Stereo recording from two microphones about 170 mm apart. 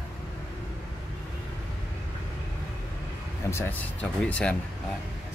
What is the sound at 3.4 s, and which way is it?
Speech, 15° left (ahead or behind).